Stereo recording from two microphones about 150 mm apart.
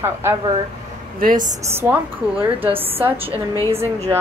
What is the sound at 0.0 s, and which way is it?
Speech, 15° right (ahead or behind).